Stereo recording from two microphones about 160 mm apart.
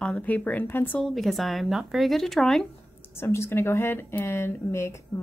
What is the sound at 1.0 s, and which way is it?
Speech, centre (ahead or behind).